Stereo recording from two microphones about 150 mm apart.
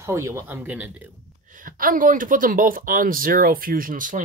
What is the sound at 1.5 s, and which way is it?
Speech, 65° right (ahead or behind).